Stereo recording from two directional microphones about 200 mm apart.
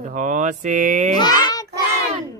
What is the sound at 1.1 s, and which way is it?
Speech, 20° left (ahead or behind).